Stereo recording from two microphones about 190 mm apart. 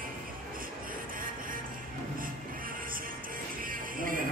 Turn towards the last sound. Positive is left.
turn(degrees=-45)  # may be behind; listen again after turning